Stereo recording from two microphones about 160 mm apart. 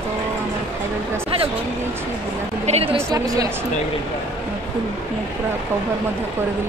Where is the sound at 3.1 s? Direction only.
20° right (ahead or behind).